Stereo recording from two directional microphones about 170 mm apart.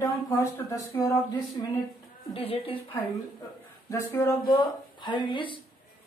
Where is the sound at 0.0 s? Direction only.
15° left (ahead or behind).